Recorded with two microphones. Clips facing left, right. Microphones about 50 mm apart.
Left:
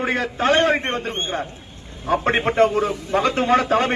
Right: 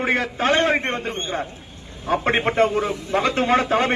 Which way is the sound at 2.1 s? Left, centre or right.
Right.